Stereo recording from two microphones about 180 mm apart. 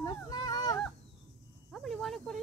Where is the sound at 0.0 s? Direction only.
20° left (ahead or behind).